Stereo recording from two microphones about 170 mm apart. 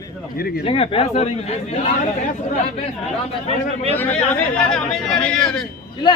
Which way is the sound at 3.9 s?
10° left (ahead or behind).